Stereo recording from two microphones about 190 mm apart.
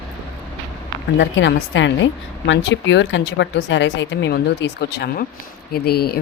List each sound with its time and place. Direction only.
1.2 s a woman's voice: 75° left (ahead or behind); by 6.1 s 55° left (ahead or behind)